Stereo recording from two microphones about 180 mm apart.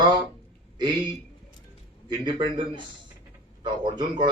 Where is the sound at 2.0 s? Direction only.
25° right (ahead or behind).